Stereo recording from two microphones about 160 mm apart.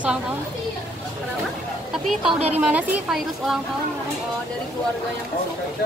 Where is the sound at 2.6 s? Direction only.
5° right (ahead or behind).